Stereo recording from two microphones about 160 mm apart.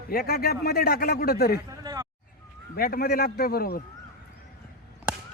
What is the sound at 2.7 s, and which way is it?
Speech, 70° left (ahead or behind).